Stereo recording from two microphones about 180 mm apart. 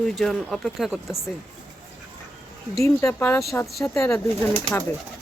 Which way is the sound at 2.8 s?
15° left (ahead or behind).